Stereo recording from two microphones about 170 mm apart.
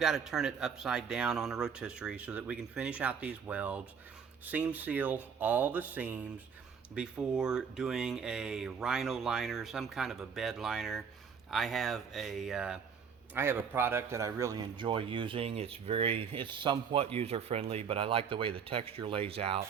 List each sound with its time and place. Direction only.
0.0 s a man's voice: centre (ahead or behind); by 19.6 s 35° right (ahead or behind)